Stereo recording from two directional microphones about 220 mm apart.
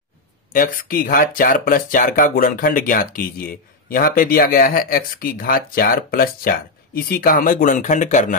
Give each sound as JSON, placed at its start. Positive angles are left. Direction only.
{"t": 0.5, "sound": "speech", "side_deg": 40}